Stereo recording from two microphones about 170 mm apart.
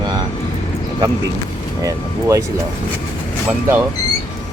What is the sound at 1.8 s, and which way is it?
Speech, 20° right (ahead or behind).